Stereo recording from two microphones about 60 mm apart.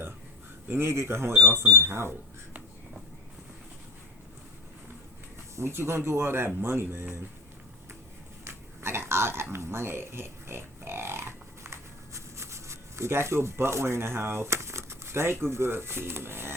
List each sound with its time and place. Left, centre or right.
0.7 s speech: right
5.5 s speech: right
8.4 s a sound: right